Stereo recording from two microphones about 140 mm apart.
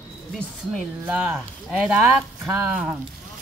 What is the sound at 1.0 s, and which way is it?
Speech, 10° right (ahead or behind).